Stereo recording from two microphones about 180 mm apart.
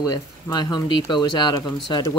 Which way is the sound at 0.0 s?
25° left (ahead or behind).